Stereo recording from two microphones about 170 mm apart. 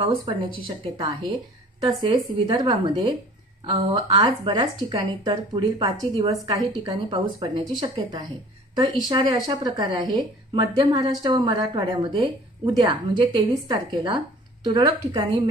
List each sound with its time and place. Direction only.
0.0 s a woman's voice: 30° right (ahead or behind)
7.3 s a woman's voice: 35° right (ahead or behind)